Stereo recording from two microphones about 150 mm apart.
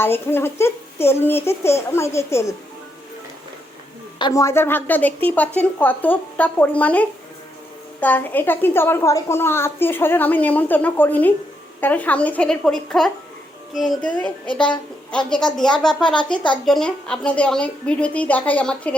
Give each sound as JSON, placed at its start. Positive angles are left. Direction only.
{"t": 0.0, "sound": "a woman's voice", "side_deg": 15}
{"t": 4.2, "sound": "a woman's voice", "side_deg": 25}